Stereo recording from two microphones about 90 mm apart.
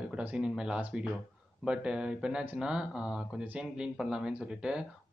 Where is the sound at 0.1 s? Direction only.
10° right (ahead or behind).